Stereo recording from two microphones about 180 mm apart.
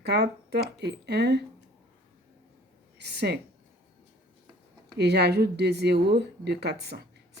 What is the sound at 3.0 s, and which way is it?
Speech, 70° right (ahead or behind).